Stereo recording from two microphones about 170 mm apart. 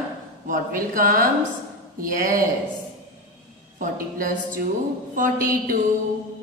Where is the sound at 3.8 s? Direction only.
55° right (ahead or behind).